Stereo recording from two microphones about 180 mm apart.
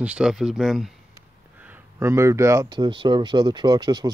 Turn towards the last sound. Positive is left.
turn(degrees=-25)  # may be behind; listen again after turning